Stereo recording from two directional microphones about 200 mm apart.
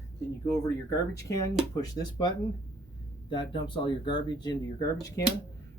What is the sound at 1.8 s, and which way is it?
Speech, 20° left (ahead or behind).